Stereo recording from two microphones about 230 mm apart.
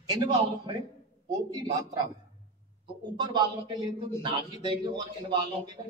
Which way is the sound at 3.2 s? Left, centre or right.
Centre.